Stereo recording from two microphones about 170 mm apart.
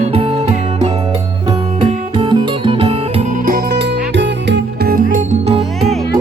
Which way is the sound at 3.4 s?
65° right (ahead or behind).